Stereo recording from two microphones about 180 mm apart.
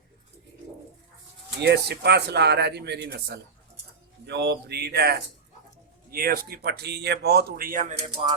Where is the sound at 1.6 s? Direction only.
65° right (ahead or behind); by 8.1 s 45° right (ahead or behind).